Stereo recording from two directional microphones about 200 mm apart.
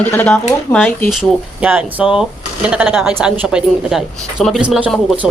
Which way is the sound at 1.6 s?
10° right (ahead or behind).